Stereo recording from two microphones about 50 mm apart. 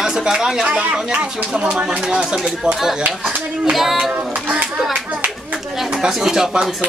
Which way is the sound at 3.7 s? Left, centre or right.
Centre.